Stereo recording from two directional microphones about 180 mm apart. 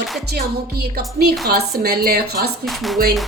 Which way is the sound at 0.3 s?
60° right (ahead or behind).